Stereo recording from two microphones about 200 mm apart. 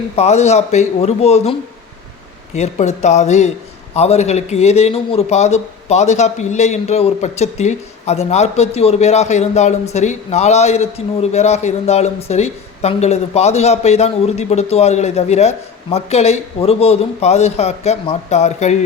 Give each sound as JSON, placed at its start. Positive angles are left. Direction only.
{"t": 0.2, "sound": "a man's voice", "side_deg": 35}
{"t": 2.6, "sound": "a man's voice", "side_deg": 35}